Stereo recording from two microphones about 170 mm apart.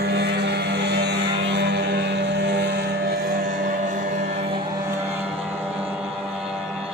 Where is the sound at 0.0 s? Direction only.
75° right (ahead or behind); by 4.0 s 50° right (ahead or behind).